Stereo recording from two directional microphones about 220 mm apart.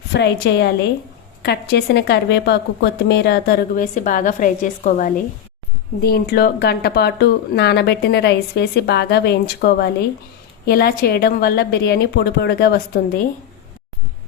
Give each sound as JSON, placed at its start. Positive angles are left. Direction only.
{"t": 0.1, "sound": "speech", "side_deg": 50}